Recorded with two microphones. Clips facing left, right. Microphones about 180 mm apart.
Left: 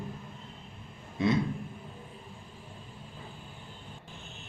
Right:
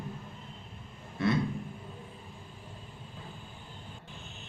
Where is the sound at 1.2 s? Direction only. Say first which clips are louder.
Left 2 dB; 20° left (ahead or behind).